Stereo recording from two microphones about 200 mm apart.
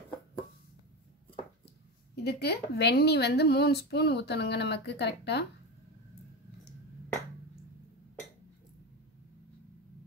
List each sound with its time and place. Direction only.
2.2 s speech: 55° left (ahead or behind)